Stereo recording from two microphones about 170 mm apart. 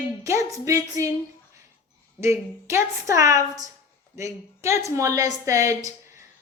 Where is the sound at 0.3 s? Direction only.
20° right (ahead or behind).